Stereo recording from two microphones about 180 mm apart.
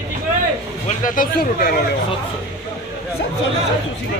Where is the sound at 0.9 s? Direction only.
50° left (ahead or behind).